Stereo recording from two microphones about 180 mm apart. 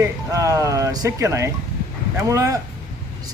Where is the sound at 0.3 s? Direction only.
20° right (ahead or behind).